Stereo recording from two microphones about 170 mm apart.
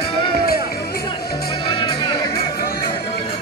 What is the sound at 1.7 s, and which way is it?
Music, 30° left (ahead or behind).